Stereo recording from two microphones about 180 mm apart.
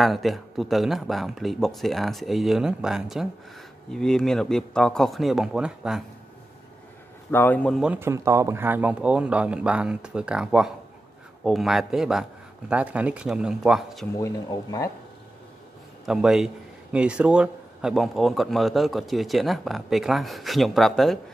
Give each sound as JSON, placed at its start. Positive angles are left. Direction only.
{"t": 0.0, "sound": "a man's voice", "side_deg": 0}
{"t": 7.2, "sound": "a man's voice", "side_deg": 10}
{"t": 14.1, "sound": "speech", "side_deg": 20}
{"t": 16.1, "sound": "a man's voice", "side_deg": -5}